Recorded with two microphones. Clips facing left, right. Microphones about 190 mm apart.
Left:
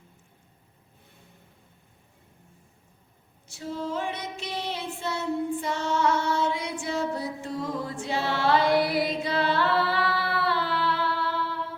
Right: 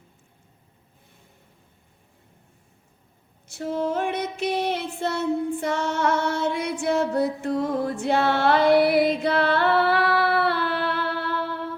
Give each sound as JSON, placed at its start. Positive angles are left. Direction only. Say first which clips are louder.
{"t": 3.6, "sound": "female singing", "louder": "right 6 dB", "side_deg": -60}